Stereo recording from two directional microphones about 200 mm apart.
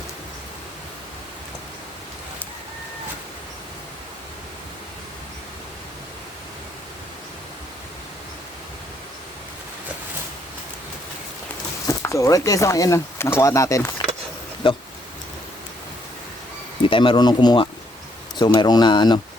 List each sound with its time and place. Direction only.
11.9 s speech: 15° left (ahead or behind)
16.8 s speech: 25° left (ahead or behind)